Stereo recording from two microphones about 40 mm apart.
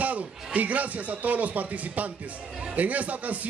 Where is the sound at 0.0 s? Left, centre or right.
Right.